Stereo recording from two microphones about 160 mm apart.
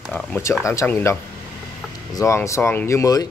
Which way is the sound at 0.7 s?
15° left (ahead or behind).